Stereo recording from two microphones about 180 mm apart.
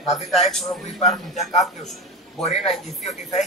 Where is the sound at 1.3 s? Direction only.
40° left (ahead or behind).